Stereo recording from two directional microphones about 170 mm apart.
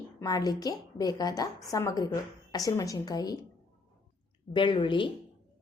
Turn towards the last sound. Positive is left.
turn(degrees=30)  # may be behind; listen again after turning